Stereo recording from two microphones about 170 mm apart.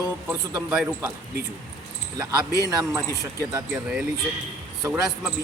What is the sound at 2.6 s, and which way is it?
Speech, 20° right (ahead or behind).